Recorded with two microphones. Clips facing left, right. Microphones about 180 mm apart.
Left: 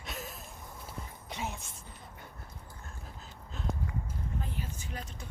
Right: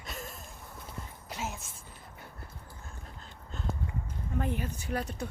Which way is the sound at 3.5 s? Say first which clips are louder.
Right 1 dB; centre (ahead or behind).